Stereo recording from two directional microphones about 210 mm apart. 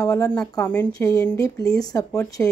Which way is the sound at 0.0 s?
15° left (ahead or behind).